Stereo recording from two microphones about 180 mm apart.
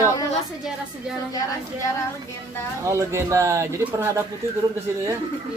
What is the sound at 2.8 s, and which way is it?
A man's voice, 15° right (ahead or behind).